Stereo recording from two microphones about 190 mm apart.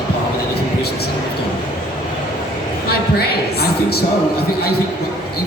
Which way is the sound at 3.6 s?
55° left (ahead or behind).